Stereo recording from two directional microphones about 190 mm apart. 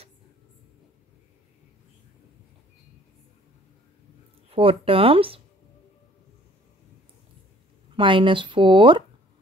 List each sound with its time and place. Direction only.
4.5 s speech: 30° right (ahead or behind)
7.9 s speech: 25° right (ahead or behind)